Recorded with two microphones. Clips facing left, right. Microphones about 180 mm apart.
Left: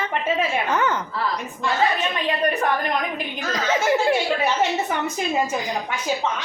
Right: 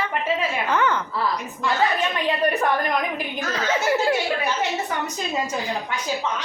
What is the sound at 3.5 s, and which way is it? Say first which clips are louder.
Speech: left 2 dB; 20° left (ahead or behind).